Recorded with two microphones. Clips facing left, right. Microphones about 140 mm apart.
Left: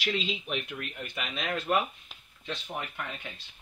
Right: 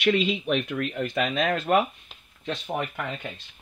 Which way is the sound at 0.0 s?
65° right (ahead or behind).